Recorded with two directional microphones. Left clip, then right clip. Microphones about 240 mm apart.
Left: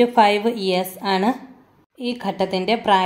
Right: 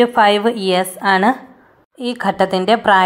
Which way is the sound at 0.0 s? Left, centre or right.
Centre.